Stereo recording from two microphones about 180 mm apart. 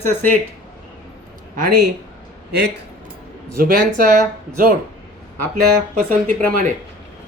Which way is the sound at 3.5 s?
55° right (ahead or behind).